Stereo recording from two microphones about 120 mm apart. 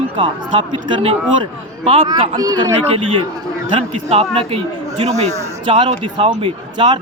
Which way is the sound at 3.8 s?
60° right (ahead or behind).